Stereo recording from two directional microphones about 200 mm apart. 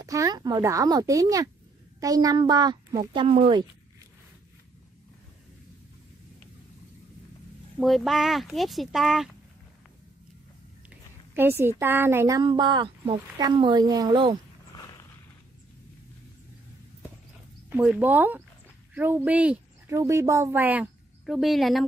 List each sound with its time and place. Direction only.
0.0 s speech: 15° right (ahead or behind)
7.8 s speech: centre (ahead or behind)
10.9 s a sound: 10° right (ahead or behind)
11.8 s speech: 10° right (ahead or behind)
17.6 s speech: 10° right (ahead or behind)